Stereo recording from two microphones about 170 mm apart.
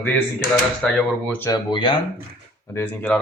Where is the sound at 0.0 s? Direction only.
10° left (ahead or behind).